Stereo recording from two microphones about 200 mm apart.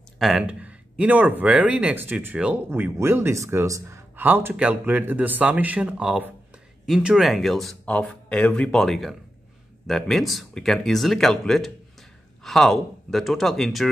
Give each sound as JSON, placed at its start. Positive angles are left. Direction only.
{"t": 0.2, "sound": "speech", "side_deg": 0}